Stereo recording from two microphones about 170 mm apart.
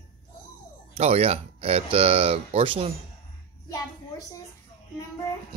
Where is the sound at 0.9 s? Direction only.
35° right (ahead or behind).